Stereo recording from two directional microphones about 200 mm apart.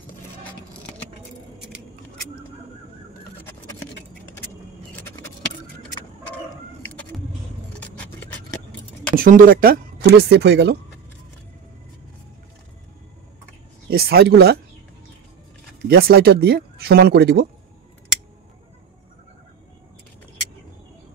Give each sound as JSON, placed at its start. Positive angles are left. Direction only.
{"t": 9.1, "sound": "speech", "side_deg": -45}
{"t": 13.8, "sound": "speech", "side_deg": -50}
{"t": 15.9, "sound": "speech", "side_deg": -50}